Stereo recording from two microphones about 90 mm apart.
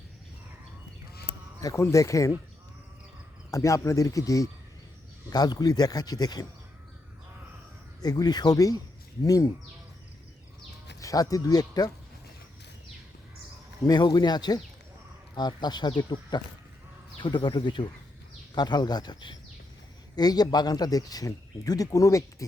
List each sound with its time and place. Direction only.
1.6 s speech: 35° left (ahead or behind)
3.5 s speech: 35° left (ahead or behind)
5.3 s speech: 50° left (ahead or behind)
8.0 s speech: 50° left (ahead or behind)
11.0 s speech: 40° left (ahead or behind)
13.8 s speech: 55° left (ahead or behind)
18.5 s speech: 50° left (ahead or behind); by 22.4 s 35° left (ahead or behind)